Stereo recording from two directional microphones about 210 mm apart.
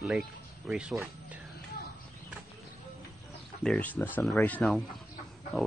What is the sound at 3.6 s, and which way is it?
Speech, 5° left (ahead or behind).